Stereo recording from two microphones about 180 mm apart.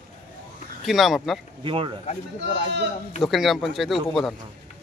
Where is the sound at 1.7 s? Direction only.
30° right (ahead or behind).